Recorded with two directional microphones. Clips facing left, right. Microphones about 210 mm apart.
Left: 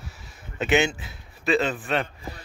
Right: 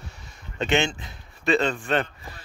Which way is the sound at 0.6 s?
5° left (ahead or behind).